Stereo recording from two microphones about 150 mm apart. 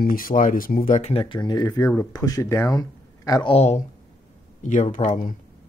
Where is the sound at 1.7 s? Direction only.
20° left (ahead or behind).